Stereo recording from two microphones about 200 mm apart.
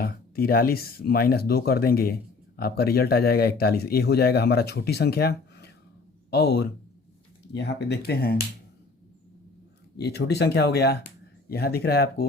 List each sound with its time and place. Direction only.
0.0 s speech: 50° left (ahead or behind)
10.0 s speech: 55° left (ahead or behind)